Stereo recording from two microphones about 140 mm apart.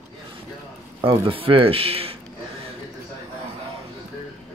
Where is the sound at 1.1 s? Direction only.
40° right (ahead or behind).